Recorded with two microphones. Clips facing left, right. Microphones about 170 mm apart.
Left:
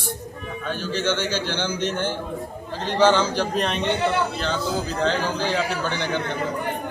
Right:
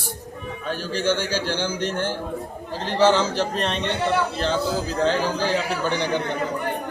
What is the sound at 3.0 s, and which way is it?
Speech, 5° right (ahead or behind).